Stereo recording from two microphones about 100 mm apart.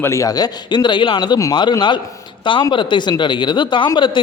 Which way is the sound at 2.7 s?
50° left (ahead or behind).